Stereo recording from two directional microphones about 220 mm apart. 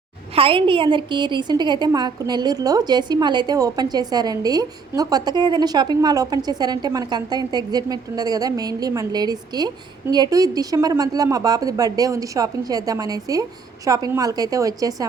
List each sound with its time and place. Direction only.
0.3 s a woman's voice: 25° right (ahead or behind)